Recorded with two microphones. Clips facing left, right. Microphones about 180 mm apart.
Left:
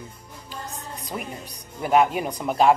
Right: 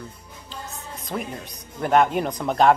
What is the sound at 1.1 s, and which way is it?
Speech, 5° left (ahead or behind).